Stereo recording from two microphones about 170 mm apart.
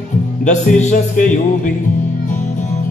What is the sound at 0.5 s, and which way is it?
Music, 45° left (ahead or behind).